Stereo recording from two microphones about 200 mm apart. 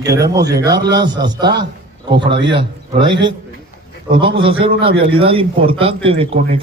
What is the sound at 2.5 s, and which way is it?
Speech, 25° right (ahead or behind).